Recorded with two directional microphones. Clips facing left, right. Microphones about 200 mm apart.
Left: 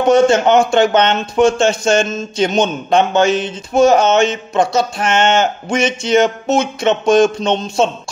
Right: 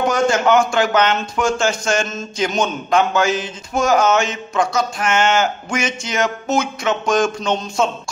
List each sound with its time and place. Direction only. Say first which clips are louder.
0.1 s speech: left 8 dB; 25° left (ahead or behind)